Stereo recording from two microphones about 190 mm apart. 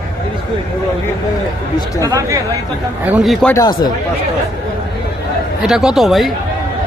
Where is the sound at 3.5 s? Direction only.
20° left (ahead or behind).